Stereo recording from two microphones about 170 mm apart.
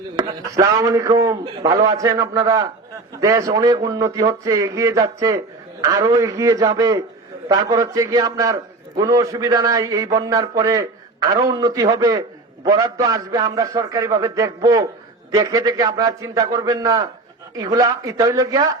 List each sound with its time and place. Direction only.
0.2 s a man's voice: 20° right (ahead or behind)